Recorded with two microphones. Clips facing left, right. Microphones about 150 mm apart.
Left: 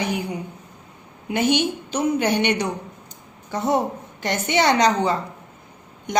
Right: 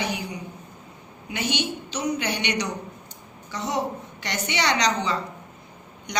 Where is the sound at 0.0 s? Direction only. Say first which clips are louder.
Left 4 dB; 50° left (ahead or behind).